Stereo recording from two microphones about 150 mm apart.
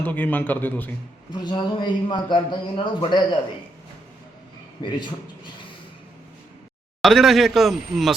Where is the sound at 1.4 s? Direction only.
30° left (ahead or behind).